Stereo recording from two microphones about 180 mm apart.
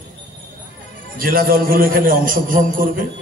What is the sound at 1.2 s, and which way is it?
A man's voice, 55° right (ahead or behind).